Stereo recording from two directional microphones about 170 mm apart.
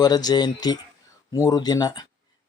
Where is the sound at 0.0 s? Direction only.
25° left (ahead or behind).